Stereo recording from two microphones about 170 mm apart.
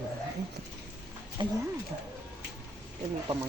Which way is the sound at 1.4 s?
25° right (ahead or behind).